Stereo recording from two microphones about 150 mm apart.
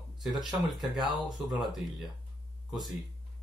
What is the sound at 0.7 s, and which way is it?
Speech, centre (ahead or behind).